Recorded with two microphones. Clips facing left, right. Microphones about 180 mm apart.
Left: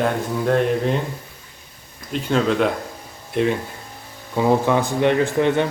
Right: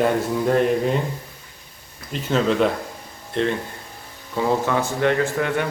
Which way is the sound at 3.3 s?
10° left (ahead or behind).